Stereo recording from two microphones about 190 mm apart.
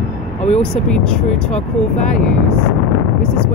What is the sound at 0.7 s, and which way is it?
Speech, 5° left (ahead or behind).